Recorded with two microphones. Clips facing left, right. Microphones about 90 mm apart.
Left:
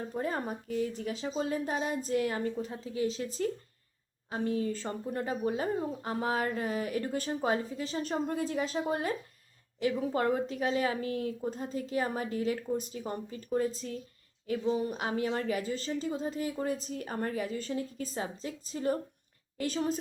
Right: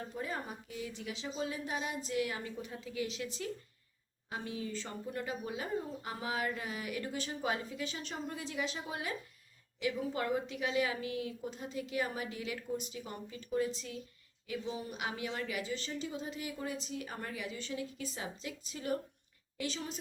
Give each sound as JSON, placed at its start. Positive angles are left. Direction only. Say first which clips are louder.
{"t": 0.1, "sound": "a woman's voice", "louder": "left 9 dB", "side_deg": 45}